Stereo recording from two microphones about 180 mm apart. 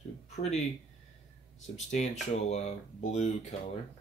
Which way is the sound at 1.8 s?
40° left (ahead or behind).